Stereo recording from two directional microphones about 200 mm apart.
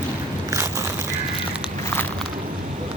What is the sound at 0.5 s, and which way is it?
Biting, 15° right (ahead or behind).